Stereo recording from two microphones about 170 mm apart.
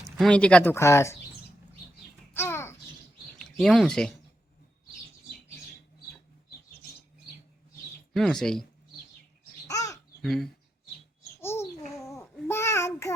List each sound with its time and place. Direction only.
0.2 s speech: 5° left (ahead or behind)
2.3 s a sound: 15° left (ahead or behind)
3.3 s speech: 5° left (ahead or behind)
8.1 s speech: centre (ahead or behind)
9.6 s crow: 20° left (ahead or behind)
10.2 s speech: centre (ahead or behind)
11.3 s babbling: 15° left (ahead or behind)